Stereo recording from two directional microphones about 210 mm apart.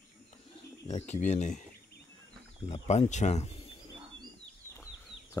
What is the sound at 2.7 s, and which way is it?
Speech, 30° left (ahead or behind).